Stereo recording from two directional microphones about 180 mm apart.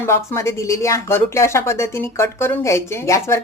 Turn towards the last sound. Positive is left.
turn(degrees=15)  # may be behind; listen again after turning